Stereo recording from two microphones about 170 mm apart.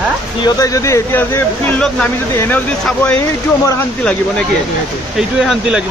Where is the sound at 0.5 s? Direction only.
20° left (ahead or behind).